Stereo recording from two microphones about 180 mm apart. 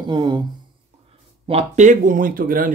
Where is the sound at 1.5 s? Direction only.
40° right (ahead or behind).